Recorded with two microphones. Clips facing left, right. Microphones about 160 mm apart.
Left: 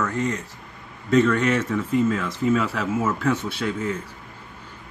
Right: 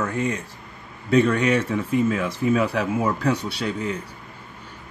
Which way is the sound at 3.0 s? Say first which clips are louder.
Left 1 dB; 40° right (ahead or behind).